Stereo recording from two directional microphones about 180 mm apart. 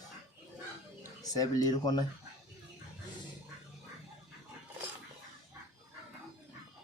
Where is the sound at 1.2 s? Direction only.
20° left (ahead or behind).